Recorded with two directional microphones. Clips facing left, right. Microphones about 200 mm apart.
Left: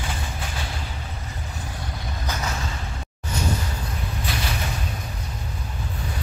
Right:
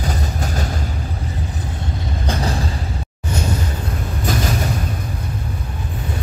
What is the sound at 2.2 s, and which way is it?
Vehicle, 30° right (ahead or behind).